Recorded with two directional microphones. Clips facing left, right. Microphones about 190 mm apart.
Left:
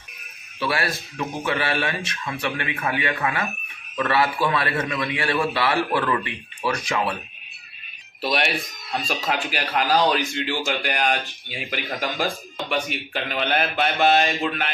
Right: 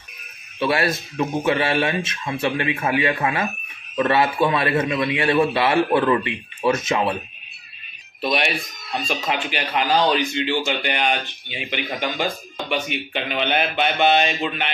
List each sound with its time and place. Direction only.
0.6 s a man's voice: 25° right (ahead or behind)
8.2 s speech: centre (ahead or behind)